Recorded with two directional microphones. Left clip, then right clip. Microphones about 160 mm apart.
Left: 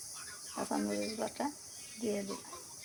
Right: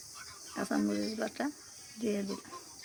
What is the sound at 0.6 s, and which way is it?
Speech, 35° right (ahead or behind).